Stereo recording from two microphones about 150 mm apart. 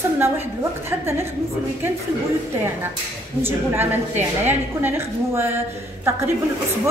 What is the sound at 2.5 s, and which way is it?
A woman's voice, 15° right (ahead or behind).